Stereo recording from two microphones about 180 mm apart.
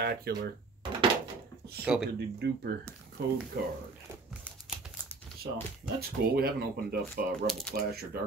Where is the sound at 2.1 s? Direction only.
70° right (ahead or behind).